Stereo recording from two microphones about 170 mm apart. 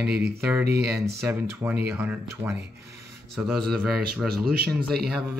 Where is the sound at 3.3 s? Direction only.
Centre (ahead or behind).